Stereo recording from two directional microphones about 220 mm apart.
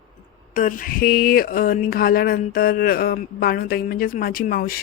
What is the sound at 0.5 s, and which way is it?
Speech, 35° left (ahead or behind).